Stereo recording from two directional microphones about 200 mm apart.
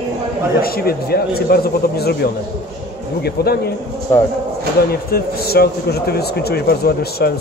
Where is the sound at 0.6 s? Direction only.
50° left (ahead or behind).